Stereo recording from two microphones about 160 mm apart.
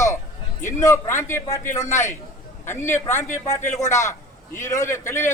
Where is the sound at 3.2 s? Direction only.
50° left (ahead or behind).